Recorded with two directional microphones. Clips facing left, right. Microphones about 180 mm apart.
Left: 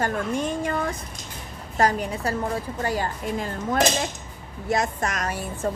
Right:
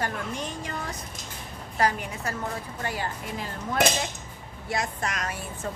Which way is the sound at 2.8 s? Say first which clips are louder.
Left 5 dB; 45° left (ahead or behind).